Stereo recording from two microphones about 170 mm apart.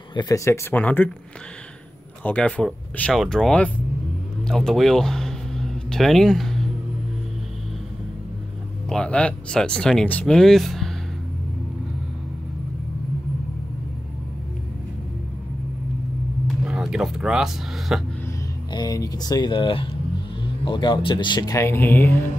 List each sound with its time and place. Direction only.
0.1 s speech: 20° left (ahead or behind)
2.2 s speech: 5° left (ahead or behind)
4.5 s a sound: centre (ahead or behind)
8.8 s speech: 5° left (ahead or behind)
16.4 s a sound: 5° right (ahead or behind)
18.7 s speech: 25° left (ahead or behind)